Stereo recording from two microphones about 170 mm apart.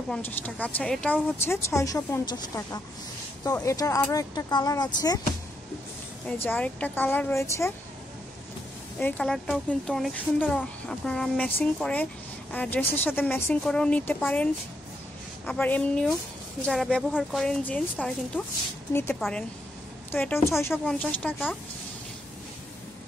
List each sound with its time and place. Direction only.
0.1 s speech: 5° left (ahead or behind); by 5.2 s 25° left (ahead or behind)
6.2 s speech: 10° left (ahead or behind)
9.0 s a woman's voice: 5° left (ahead or behind)
20.7 s speech: 5° left (ahead or behind)